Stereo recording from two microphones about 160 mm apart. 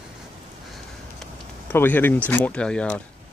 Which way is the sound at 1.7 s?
10° left (ahead or behind).